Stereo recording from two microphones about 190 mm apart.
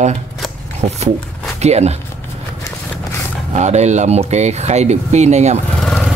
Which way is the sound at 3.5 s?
35° right (ahead or behind).